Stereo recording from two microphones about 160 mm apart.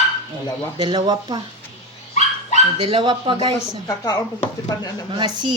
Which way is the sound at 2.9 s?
30° right (ahead or behind).